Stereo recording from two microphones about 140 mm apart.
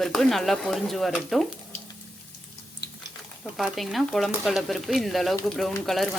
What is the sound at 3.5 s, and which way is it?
Speech, centre (ahead or behind).